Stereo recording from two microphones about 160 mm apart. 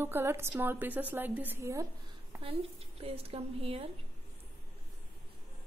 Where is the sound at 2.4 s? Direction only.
40° right (ahead or behind).